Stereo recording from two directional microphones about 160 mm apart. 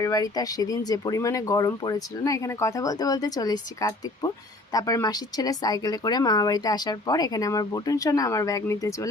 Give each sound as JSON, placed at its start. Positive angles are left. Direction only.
{"t": 0.0, "sound": "speech", "side_deg": 25}